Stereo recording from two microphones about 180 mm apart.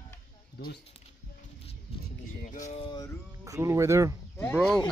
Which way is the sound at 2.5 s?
40° left (ahead or behind).